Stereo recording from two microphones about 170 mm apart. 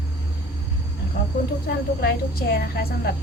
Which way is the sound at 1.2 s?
60° left (ahead or behind).